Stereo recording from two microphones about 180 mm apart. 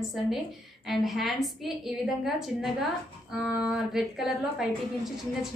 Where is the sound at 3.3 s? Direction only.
5° right (ahead or behind).